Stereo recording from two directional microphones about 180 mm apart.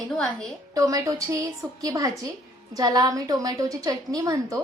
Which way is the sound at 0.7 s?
20° right (ahead or behind).